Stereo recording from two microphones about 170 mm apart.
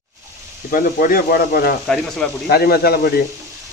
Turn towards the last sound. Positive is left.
turn(degrees=65)  # may be behind; listen again after turning